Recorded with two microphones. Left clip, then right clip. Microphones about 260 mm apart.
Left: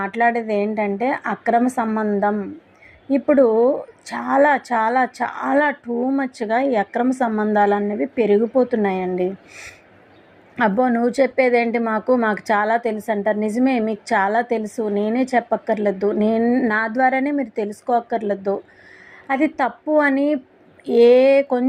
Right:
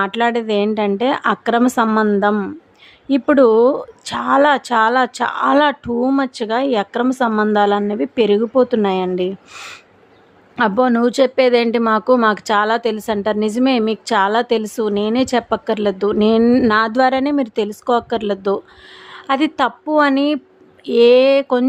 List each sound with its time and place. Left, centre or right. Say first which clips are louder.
0.0 s speech: right 2 dB; centre
10.6 s speech: right 3 dB; centre